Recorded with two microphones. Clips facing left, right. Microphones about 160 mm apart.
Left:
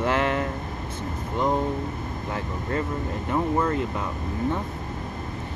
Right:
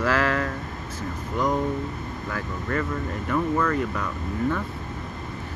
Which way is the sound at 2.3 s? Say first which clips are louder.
Even; 20° left (ahead or behind).